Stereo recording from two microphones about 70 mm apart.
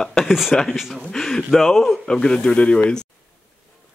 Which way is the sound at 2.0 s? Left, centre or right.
Centre.